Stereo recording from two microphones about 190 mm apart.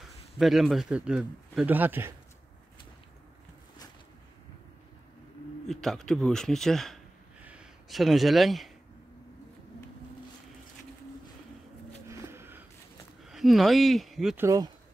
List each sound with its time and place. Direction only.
0.4 s speech: centre (ahead or behind)
5.7 s speech: centre (ahead or behind)
12.1 s a sound: 15° right (ahead or behind)
13.2 s speech: centre (ahead or behind)
14.4 s speech: 15° right (ahead or behind)